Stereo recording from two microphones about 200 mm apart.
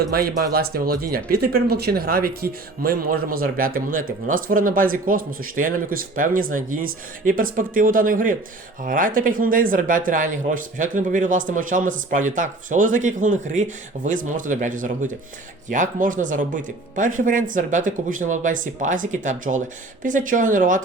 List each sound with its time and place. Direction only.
0.1 s speech: 50° right (ahead or behind)